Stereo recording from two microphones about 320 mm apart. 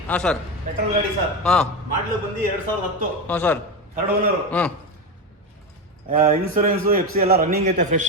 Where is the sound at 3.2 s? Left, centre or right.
Centre.